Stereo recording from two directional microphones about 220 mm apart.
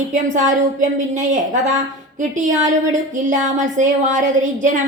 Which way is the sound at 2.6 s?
35° right (ahead or behind).